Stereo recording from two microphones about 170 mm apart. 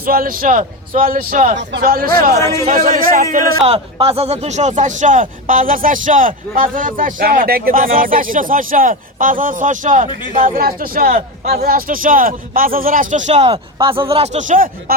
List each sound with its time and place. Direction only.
0.0 s a man's voice: 60° right (ahead or behind)
3.6 s a man's voice: 35° right (ahead or behind); by 14.9 s 50° right (ahead or behind)